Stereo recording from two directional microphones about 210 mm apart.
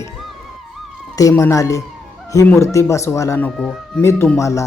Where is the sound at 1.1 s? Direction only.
15° left (ahead or behind).